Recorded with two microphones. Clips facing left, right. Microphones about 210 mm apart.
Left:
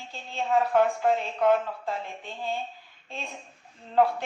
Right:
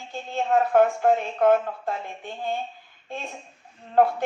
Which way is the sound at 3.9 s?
55° right (ahead or behind).